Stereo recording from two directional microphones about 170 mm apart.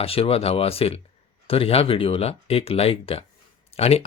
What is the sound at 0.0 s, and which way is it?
Speech, 35° left (ahead or behind).